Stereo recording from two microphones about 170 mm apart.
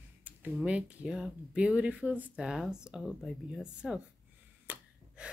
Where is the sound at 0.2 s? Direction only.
10° right (ahead or behind).